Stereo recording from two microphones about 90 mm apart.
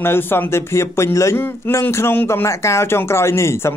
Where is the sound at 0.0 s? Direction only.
25° left (ahead or behind).